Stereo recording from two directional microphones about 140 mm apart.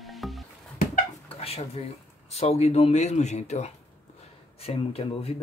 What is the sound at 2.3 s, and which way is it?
Speech, 50° left (ahead or behind).